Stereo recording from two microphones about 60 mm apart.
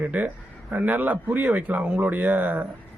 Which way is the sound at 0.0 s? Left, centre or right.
Right.